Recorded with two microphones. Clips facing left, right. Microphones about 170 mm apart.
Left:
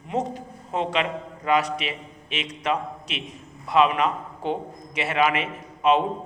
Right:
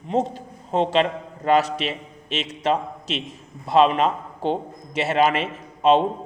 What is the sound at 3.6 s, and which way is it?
A man's voice, 30° right (ahead or behind).